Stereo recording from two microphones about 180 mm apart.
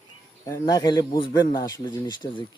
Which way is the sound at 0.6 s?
20° left (ahead or behind).